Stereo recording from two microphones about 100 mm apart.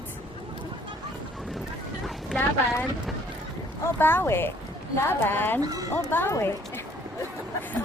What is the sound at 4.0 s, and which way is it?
Speech, 20° left (ahead or behind).